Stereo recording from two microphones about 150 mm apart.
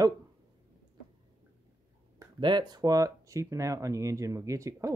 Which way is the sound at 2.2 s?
30° right (ahead or behind).